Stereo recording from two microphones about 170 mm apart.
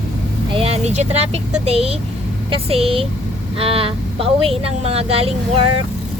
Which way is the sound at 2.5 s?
35° right (ahead or behind).